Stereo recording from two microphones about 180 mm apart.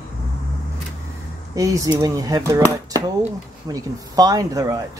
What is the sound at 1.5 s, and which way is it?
Speech, 20° right (ahead or behind).